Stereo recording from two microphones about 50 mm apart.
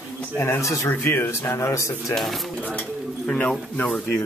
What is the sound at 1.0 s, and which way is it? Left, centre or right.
Speech, left.